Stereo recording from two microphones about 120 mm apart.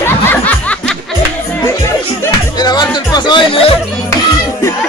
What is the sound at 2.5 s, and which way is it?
Music, 35° left (ahead or behind).